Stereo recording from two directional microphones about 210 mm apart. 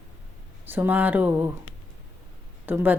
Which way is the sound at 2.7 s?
10° right (ahead or behind).